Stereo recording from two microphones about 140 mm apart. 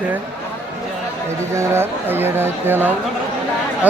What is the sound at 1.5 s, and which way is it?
Speech, 15° right (ahead or behind).